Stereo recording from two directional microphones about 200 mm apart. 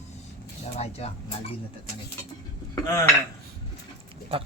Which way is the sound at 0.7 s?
30° left (ahead or behind).